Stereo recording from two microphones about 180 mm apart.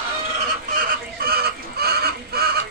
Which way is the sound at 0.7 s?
55° right (ahead or behind).